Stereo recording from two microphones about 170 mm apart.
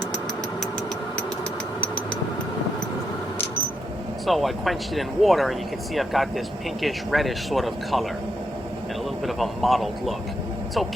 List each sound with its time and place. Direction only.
4.3 s speech: centre (ahead or behind)
9.2 s speech: centre (ahead or behind)